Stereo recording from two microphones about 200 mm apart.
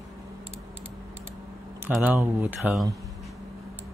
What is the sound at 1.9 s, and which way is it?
Speech, 10° right (ahead or behind).